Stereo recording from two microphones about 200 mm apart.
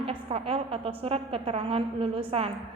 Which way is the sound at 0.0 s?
30° right (ahead or behind).